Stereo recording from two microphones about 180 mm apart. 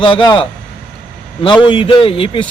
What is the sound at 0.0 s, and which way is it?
Speech, 25° left (ahead or behind).